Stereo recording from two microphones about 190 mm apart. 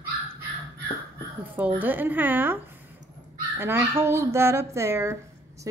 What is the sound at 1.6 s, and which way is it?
Speech, 10° right (ahead or behind).